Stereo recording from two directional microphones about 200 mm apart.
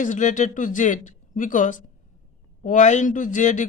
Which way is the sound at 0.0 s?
40° left (ahead or behind).